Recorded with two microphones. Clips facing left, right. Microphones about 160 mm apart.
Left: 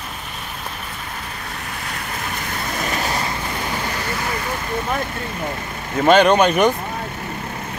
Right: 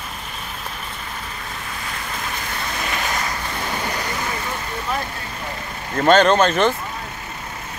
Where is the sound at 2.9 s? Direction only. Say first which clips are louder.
Left 2 dB; 35° left (ahead or behind).